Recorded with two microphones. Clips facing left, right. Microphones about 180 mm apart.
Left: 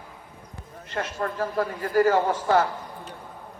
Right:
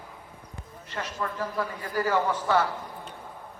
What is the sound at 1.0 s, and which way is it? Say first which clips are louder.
A man's voice: left 4 dB; 50° left (ahead or behind).